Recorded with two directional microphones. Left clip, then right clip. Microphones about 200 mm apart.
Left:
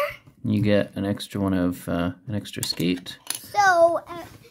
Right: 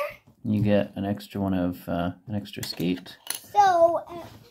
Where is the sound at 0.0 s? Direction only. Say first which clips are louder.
Left 5 dB; 50° left (ahead or behind).